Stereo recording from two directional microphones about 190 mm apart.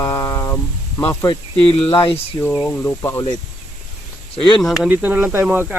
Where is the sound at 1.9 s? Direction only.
25° left (ahead or behind).